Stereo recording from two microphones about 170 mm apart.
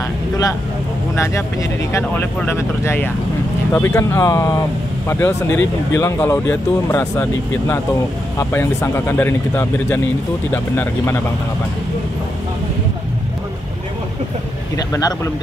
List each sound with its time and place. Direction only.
1.1 s speech: 15° left (ahead or behind)
14.8 s speech: 20° left (ahead or behind)